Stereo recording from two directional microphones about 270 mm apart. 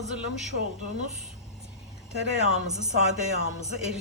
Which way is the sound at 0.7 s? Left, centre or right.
Right.